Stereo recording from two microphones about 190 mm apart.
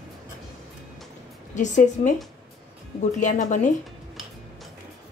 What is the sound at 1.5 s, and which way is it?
Speech, 40° left (ahead or behind).